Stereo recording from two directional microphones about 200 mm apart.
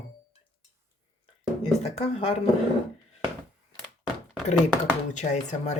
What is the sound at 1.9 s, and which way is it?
Speech, 30° left (ahead or behind).